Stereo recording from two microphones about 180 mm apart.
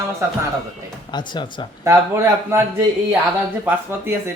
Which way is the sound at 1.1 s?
25° left (ahead or behind).